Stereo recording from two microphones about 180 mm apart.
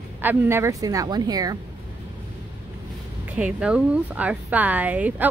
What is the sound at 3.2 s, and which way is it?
Speech, 5° right (ahead or behind).